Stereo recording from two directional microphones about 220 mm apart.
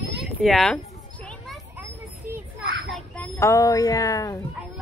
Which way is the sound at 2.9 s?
10° left (ahead or behind).